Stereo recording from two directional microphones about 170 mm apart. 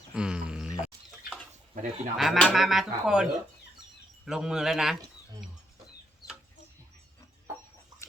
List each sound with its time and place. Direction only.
0.1 s a sound: 5° right (ahead or behind)
1.7 s speech: 45° right (ahead or behind)
2.1 s speech: centre (ahead or behind)
4.3 s speech: 5° right (ahead or behind)